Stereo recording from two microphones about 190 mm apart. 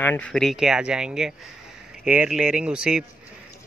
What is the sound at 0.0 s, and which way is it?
Speech, 10° left (ahead or behind).